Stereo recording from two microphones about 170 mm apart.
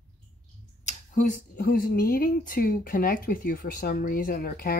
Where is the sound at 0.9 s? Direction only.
45° left (ahead or behind).